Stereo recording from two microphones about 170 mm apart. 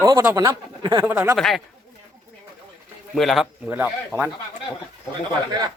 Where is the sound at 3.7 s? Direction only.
10° right (ahead or behind).